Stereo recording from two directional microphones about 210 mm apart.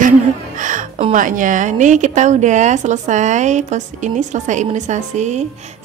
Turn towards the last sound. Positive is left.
turn(degrees=-35)  # may be behind; listen again after turning